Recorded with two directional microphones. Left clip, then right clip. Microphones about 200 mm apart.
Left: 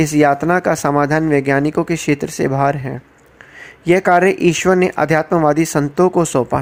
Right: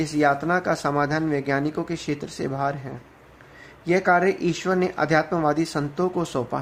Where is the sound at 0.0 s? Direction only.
35° left (ahead or behind).